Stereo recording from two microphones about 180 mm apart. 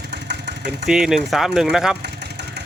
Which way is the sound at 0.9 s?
5° right (ahead or behind).